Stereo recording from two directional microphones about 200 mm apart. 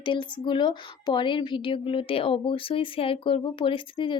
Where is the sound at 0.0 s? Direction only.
25° left (ahead or behind).